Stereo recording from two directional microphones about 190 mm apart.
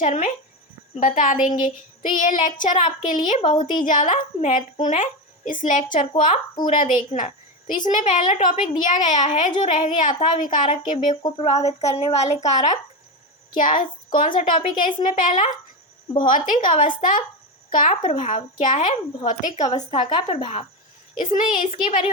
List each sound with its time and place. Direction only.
0.0 s a sound: 40° left (ahead or behind)
0.9 s child singing: 45° left (ahead or behind)
3.4 s a woman's voice: 25° left (ahead or behind)
3.7 s a woman's voice: 45° left (ahead or behind)
11.2 s a woman's voice: 20° left (ahead or behind)
11.4 s a woman's voice: 35° left (ahead or behind)
13.6 s child singing: 45° left (ahead or behind)
17.7 s a woman's voice: 40° left (ahead or behind)
21.3 s child singing: 45° left (ahead or behind)